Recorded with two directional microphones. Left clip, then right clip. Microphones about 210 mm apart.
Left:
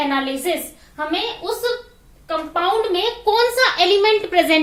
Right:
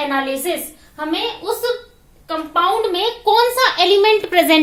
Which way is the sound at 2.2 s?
35° right (ahead or behind).